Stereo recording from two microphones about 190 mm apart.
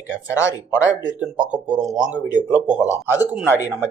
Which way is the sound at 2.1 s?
20° left (ahead or behind).